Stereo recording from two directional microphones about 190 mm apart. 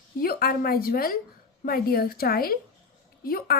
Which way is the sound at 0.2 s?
50° left (ahead or behind).